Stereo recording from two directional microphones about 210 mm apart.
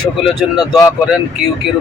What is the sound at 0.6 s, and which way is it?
Speech, 20° left (ahead or behind).